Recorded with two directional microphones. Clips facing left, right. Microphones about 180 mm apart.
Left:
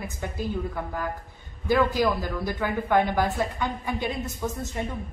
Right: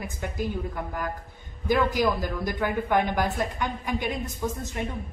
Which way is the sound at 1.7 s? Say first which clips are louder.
Left 1 dB; 15° right (ahead or behind).